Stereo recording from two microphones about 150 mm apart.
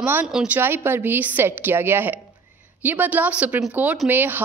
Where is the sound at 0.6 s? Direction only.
15° right (ahead or behind).